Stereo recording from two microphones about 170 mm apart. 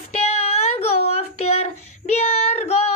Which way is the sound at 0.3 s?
40° left (ahead or behind).